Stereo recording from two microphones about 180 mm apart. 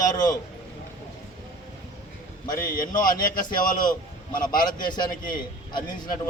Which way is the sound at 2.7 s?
50° left (ahead or behind).